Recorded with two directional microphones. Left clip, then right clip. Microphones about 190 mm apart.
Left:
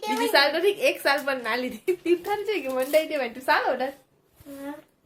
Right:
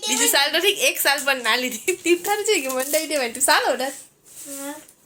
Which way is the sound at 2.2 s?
40° right (ahead or behind).